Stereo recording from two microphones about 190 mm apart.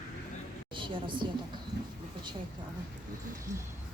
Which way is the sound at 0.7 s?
25° right (ahead or behind).